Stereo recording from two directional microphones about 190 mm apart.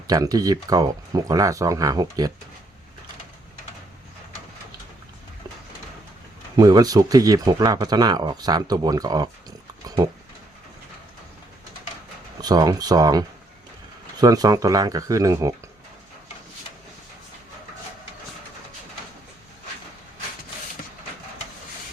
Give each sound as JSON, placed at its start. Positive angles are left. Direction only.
{"t": 0.1, "sound": "speech", "side_deg": -20}
{"t": 6.6, "sound": "speech", "side_deg": -20}
{"t": 12.4, "sound": "speech", "side_deg": -20}